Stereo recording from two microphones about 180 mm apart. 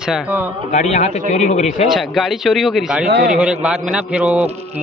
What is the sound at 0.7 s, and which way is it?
Speech, 40° left (ahead or behind).